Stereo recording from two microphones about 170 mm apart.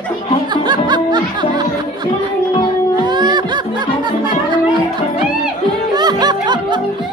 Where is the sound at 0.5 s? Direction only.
25° right (ahead or behind).